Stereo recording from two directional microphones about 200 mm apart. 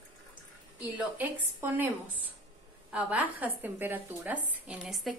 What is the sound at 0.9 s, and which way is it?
Speech, 10° right (ahead or behind).